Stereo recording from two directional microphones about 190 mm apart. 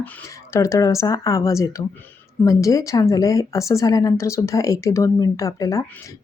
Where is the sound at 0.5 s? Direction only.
15° left (ahead or behind).